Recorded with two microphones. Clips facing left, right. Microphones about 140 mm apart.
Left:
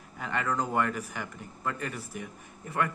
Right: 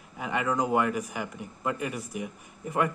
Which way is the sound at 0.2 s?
10° right (ahead or behind).